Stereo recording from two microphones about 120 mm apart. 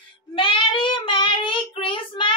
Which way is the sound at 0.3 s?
45° left (ahead or behind).